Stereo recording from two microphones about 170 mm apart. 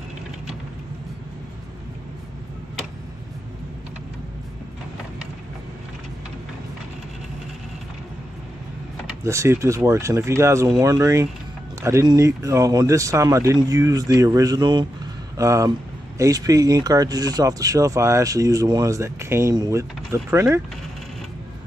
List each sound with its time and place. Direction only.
9.2 s speech: 15° right (ahead or behind)